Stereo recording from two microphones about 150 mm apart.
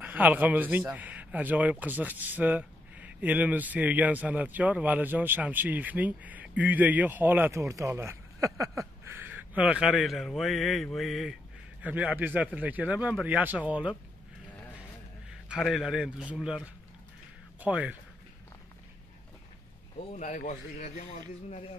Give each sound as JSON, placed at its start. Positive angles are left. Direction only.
{"t": 0.0, "sound": "speech", "side_deg": -10}
{"t": 15.4, "sound": "a man's voice", "side_deg": -5}
{"t": 20.1, "sound": "speech", "side_deg": 55}